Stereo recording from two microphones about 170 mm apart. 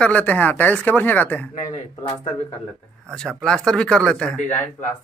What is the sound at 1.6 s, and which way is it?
Speech, 40° left (ahead or behind).